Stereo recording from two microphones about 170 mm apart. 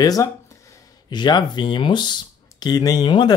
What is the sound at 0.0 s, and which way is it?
Speech, 20° left (ahead or behind).